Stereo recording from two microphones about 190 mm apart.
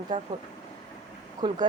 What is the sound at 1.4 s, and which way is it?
Speech, 25° right (ahead or behind).